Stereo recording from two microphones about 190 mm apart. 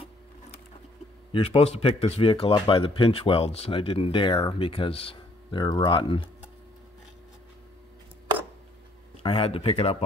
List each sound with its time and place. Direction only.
1.3 s a man's voice: 30° left (ahead or behind)
9.2 s a man's voice: 30° left (ahead or behind)